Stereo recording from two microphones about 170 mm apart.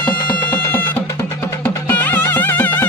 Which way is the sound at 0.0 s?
10° left (ahead or behind).